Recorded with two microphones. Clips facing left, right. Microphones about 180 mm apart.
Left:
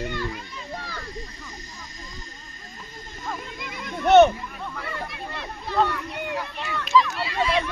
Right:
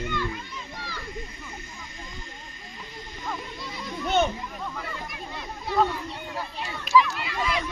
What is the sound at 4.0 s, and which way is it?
Children playing, 70° left (ahead or behind).